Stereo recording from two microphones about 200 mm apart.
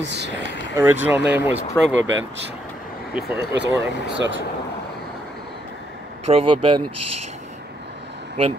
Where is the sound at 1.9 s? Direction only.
70° right (ahead or behind).